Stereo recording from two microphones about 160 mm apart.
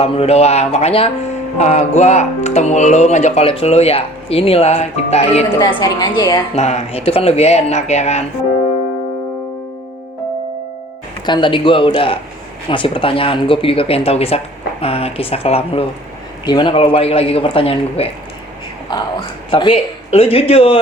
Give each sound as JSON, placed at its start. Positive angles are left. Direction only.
{"t": 0.0, "sound": "speech", "side_deg": 40}
{"t": 5.5, "sound": "a woman's voice", "side_deg": 25}
{"t": 6.6, "sound": "speech", "side_deg": 45}
{"t": 11.3, "sound": "a woman's voice", "side_deg": 30}